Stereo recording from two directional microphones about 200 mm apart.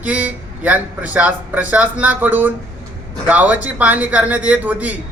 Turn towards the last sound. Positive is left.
turn(degrees=-10)  # may be behind; listen again after turning